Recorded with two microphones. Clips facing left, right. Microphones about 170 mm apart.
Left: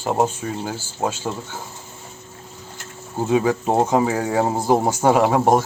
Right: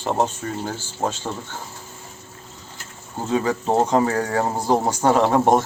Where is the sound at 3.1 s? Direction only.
10° left (ahead or behind).